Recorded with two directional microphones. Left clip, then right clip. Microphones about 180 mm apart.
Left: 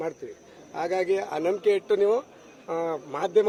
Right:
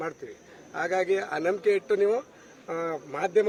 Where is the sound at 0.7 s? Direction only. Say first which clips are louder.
Even; 20° left (ahead or behind).